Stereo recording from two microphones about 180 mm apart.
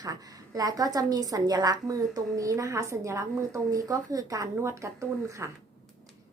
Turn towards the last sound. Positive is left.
turn(degrees=-15)  # may be behind; listen again after turning